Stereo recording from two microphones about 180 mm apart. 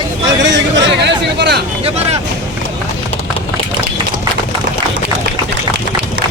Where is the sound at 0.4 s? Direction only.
75° right (ahead or behind).